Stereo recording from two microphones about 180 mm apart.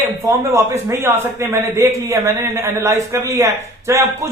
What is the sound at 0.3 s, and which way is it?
A man's voice, 15° right (ahead or behind).